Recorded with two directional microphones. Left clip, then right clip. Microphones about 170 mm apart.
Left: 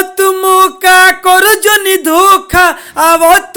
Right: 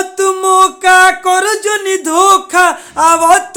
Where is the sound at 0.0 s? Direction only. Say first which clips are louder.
Left 3 dB; 20° left (ahead or behind).